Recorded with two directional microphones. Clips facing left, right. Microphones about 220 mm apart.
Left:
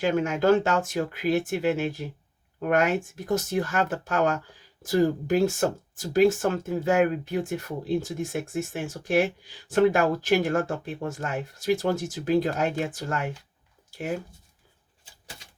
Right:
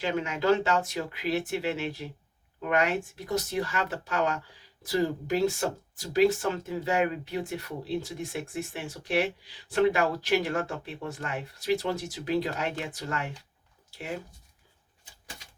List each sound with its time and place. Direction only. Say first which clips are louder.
0.0 s speech: left 5 dB; 50° left (ahead or behind)